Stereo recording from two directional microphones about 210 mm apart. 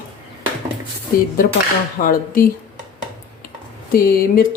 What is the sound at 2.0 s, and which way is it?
Speech, 40° left (ahead or behind).